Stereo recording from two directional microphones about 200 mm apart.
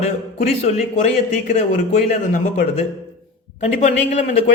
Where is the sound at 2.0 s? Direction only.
40° left (ahead or behind).